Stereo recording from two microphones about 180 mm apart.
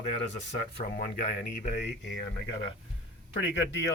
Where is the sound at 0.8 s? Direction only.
50° left (ahead or behind); by 2.2 s 75° left (ahead or behind).